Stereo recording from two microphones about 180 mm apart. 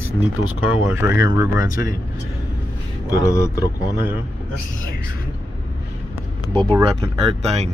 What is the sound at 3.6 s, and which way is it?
Speech, 20° left (ahead or behind).